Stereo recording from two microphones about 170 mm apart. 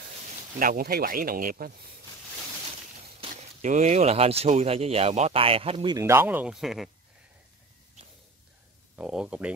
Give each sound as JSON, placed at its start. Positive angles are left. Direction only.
{"t": 0.6, "sound": "speech", "side_deg": -55}
{"t": 3.2, "sound": "speech", "side_deg": -40}
{"t": 5.9, "sound": "speech", "side_deg": -15}
{"t": 8.9, "sound": "speech", "side_deg": -5}